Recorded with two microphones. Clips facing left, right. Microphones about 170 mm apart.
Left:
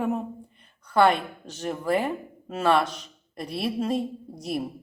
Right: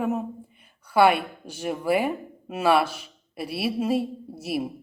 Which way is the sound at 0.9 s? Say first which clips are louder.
Right 1 dB; 10° right (ahead or behind).